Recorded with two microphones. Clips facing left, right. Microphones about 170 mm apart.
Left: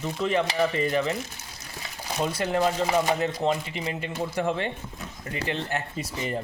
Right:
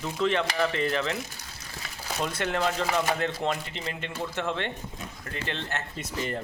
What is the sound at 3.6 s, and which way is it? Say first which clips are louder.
Speech: left 4 dB; 10° left (ahead or behind).